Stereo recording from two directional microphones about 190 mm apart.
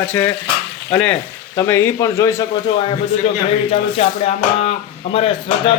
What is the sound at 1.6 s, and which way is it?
Speech, 15° left (ahead or behind).